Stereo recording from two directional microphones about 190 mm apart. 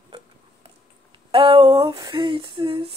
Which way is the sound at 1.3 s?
30° right (ahead or behind).